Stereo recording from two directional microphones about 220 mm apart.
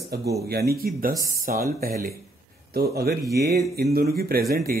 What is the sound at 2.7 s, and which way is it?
Speech, 45° right (ahead or behind).